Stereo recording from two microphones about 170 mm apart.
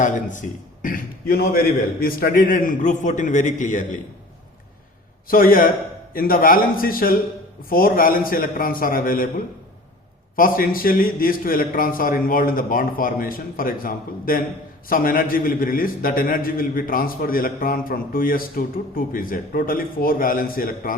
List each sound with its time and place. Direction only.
0.0 s a man's voice: 50° left (ahead or behind)
5.3 s a man's voice: 55° left (ahead or behind)
10.3 s a man's voice: 55° left (ahead or behind)